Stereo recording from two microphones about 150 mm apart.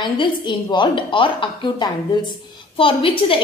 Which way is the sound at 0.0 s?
30° left (ahead or behind).